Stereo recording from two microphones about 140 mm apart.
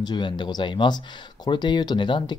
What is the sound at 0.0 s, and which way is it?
Speech, 30° left (ahead or behind).